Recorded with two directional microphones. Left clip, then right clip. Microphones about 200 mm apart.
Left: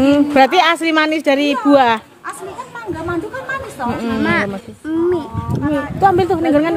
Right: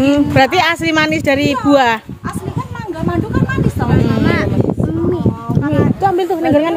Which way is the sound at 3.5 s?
Centre (ahead or behind).